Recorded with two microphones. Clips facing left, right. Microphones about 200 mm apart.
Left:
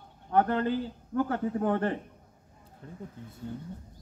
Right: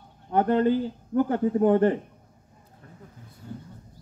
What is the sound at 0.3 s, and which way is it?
A man's voice, 20° right (ahead or behind).